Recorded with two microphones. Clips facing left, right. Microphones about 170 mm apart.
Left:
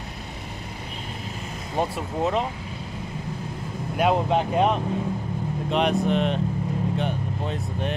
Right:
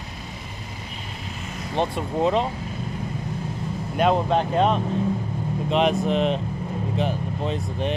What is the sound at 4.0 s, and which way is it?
Speech, 10° left (ahead or behind).